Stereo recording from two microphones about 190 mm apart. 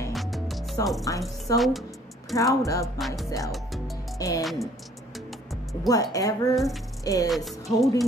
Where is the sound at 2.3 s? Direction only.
15° left (ahead or behind).